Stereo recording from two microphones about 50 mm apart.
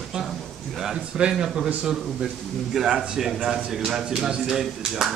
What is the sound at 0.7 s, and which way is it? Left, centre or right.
A man's voice, centre.